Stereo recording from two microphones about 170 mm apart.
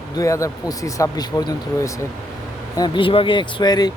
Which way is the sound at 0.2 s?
20° left (ahead or behind).